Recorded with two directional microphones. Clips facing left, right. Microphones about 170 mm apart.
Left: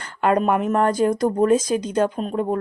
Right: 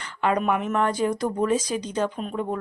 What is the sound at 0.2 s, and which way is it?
Speech, 45° left (ahead or behind).